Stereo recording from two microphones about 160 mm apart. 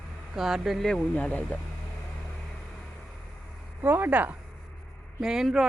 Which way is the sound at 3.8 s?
10° right (ahead or behind).